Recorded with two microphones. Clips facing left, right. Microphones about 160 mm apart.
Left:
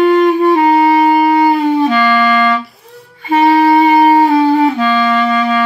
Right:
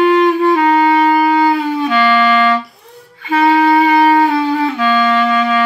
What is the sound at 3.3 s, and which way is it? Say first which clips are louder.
Music: left 2 dB; 30° left (ahead or behind).